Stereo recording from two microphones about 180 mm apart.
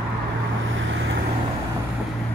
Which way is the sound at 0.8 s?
90° right.